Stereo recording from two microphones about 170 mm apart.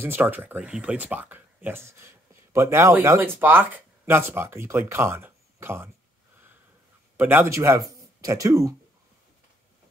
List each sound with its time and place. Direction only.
0.0 s speech: 10° right (ahead or behind)
7.2 s speech: 10° right (ahead or behind)